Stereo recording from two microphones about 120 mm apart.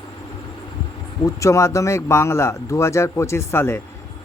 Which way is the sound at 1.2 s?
25° left (ahead or behind).